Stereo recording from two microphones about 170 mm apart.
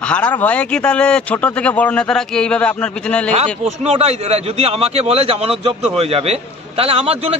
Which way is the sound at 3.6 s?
40° right (ahead or behind).